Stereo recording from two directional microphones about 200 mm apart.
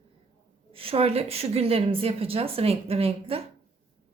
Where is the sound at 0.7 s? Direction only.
25° right (ahead or behind).